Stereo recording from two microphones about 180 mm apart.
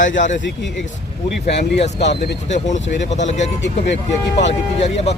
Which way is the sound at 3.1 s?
40° left (ahead or behind).